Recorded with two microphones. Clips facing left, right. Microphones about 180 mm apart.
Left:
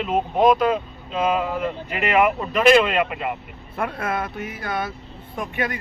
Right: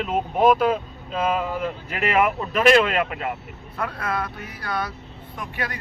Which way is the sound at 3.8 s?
25° left (ahead or behind).